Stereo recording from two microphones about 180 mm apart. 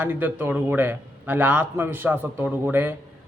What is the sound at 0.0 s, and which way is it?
A man's voice, 10° right (ahead or behind).